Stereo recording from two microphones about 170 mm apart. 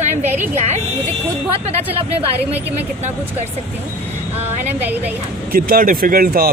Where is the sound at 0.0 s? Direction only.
45° right (ahead or behind).